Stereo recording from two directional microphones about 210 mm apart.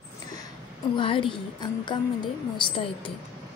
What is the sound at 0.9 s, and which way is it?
A woman's voice, 25° left (ahead or behind).